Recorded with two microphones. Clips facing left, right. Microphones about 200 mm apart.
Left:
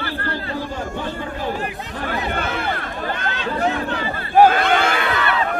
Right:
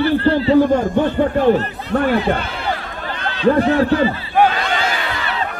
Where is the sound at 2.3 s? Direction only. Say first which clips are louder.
Even; 55° left (ahead or behind).